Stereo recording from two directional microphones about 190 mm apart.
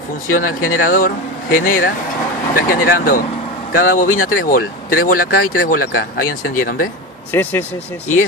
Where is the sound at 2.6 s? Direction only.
50° left (ahead or behind).